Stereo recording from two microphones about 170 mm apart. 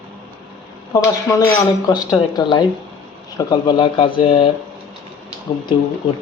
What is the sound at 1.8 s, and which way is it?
Speech, 25° left (ahead or behind).